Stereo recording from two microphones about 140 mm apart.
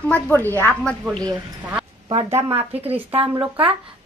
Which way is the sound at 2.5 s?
45° right (ahead or behind).